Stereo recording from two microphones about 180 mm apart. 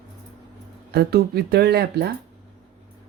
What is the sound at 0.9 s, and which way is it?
Speech, 60° right (ahead or behind).